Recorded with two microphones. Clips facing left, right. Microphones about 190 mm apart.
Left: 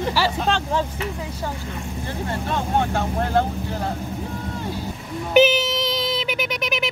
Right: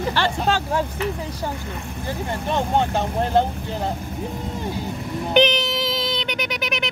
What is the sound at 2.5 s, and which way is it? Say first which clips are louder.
Speech: right 2 dB; 20° right (ahead or behind).